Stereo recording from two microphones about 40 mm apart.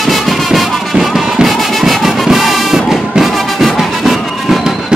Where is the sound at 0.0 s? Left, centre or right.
Centre.